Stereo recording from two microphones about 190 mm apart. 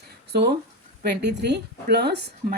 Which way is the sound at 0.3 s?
60° right (ahead or behind).